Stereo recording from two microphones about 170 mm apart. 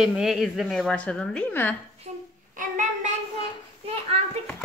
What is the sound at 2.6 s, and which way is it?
Child singing, 45° right (ahead or behind).